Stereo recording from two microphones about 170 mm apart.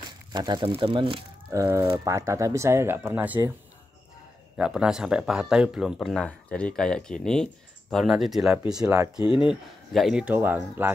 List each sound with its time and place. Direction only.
0.3 s speech: 25° right (ahead or behind)
1.5 s speech: 20° right (ahead or behind)
4.6 s speech: 5° right (ahead or behind)
8.8 s speech: 15° right (ahead or behind)
9.2 s speech: 30° left (ahead or behind)
9.5 s speech: 5° right (ahead or behind)